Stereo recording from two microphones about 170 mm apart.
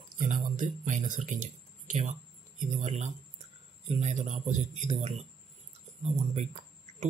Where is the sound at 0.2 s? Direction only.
50° right (ahead or behind).